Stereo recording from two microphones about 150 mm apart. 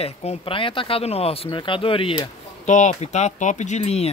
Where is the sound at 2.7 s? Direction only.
50° left (ahead or behind).